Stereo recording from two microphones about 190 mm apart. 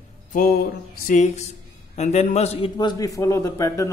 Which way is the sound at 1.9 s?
35° left (ahead or behind).